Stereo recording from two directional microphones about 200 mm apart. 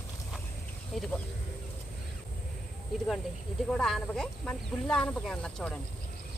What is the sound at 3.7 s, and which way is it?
Speech, centre (ahead or behind).